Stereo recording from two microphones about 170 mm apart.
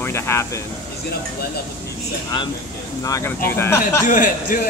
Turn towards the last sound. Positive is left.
turn(degrees=50)  # may be behind; listen again after turning